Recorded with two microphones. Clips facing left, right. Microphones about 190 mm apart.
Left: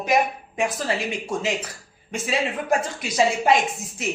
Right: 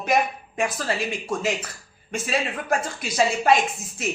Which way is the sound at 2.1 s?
15° left (ahead or behind).